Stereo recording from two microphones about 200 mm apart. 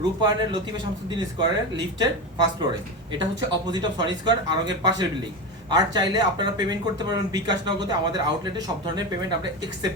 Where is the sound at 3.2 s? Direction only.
20° right (ahead or behind).